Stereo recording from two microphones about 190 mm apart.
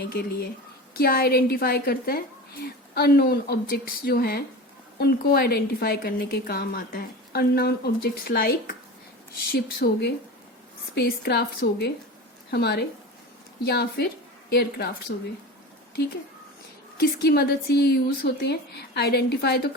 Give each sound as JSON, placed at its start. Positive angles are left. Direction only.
{"t": 0.1, "sound": "a woman's voice", "side_deg": 55}
{"t": 17.0, "sound": "a woman's voice", "side_deg": 55}